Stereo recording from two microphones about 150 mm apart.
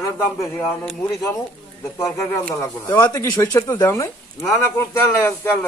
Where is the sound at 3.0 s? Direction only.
25° left (ahead or behind).